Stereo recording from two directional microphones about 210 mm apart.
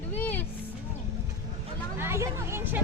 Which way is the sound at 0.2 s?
10° left (ahead or behind).